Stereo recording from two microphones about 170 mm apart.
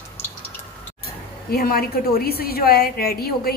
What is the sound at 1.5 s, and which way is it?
A woman's voice, 60° left (ahead or behind).